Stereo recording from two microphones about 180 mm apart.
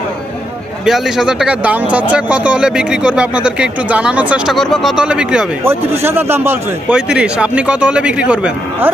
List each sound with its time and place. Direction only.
0.9 s speech: centre (ahead or behind)